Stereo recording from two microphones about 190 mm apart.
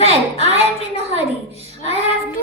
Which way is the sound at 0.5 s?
30° left (ahead or behind).